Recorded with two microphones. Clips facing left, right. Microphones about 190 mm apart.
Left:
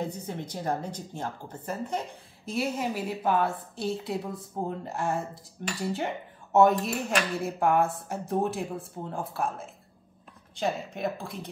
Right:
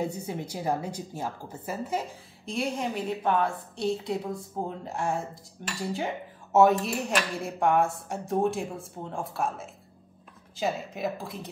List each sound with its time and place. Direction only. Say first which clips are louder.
0.0 s a woman's voice: right 2 dB; 10° right (ahead or behind)
2.4 s a woman's voice: left 1 dB; 5° left (ahead or behind)